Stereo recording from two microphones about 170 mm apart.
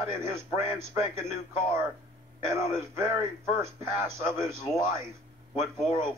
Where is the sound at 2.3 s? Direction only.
15° right (ahead or behind).